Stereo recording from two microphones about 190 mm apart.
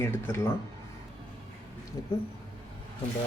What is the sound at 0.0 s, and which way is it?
Speech, 10° left (ahead or behind).